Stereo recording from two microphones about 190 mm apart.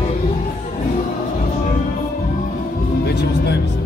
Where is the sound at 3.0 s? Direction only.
60° left (ahead or behind).